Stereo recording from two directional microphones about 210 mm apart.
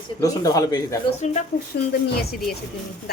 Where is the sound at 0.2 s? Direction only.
15° left (ahead or behind).